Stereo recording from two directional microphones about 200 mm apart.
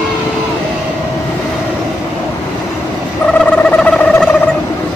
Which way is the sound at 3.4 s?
5° left (ahead or behind).